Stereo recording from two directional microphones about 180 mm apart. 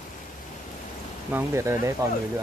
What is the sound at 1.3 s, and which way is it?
Speech, 15° right (ahead or behind).